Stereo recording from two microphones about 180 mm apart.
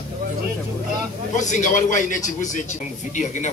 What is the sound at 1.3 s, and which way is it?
A man's voice, 40° left (ahead or behind).